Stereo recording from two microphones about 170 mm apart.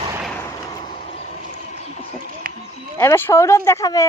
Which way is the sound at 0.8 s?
30° left (ahead or behind).